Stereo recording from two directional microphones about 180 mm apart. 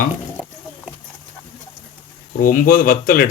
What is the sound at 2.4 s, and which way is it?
Speech, 55° left (ahead or behind).